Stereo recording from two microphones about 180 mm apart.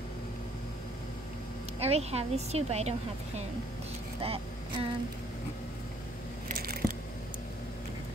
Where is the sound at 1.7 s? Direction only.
35° right (ahead or behind).